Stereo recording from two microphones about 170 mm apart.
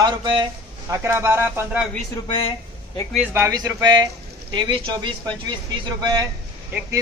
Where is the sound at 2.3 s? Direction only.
30° left (ahead or behind).